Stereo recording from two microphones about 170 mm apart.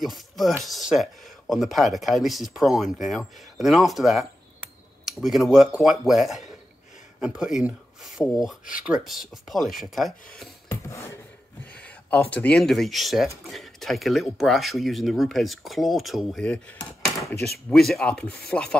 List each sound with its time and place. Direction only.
0.0 s speech: centre (ahead or behind)
10.7 s a sound: 15° left (ahead or behind)
11.7 s speech: 10° left (ahead or behind)